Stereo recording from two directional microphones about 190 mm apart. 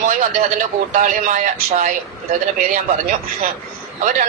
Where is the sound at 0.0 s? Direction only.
45° right (ahead or behind).